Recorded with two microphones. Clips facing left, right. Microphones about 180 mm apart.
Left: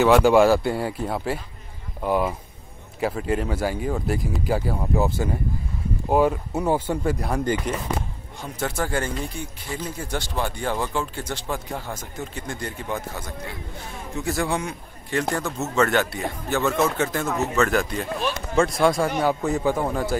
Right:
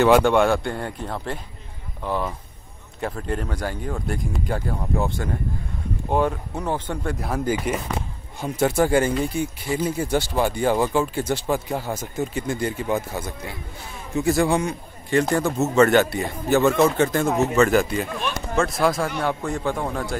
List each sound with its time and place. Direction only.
0.0 s speech: 5° left (ahead or behind)